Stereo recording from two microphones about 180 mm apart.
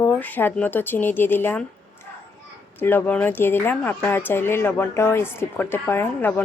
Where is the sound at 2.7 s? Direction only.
10° left (ahead or behind).